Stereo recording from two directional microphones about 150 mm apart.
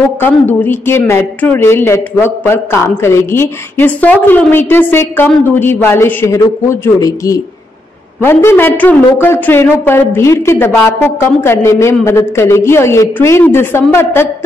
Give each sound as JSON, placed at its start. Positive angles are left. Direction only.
{"t": 0.2, "sound": "speech", "side_deg": 15}